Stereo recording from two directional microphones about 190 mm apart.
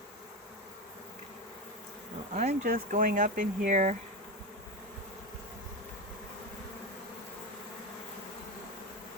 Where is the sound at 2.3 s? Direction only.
40° right (ahead or behind).